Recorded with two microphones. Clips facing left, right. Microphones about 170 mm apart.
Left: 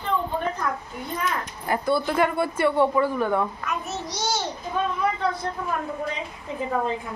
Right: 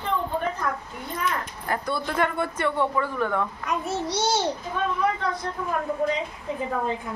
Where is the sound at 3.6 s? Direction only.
30° right (ahead or behind).